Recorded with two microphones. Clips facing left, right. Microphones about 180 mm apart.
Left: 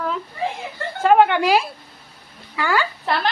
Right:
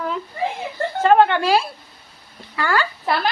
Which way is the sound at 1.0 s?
10° left (ahead or behind).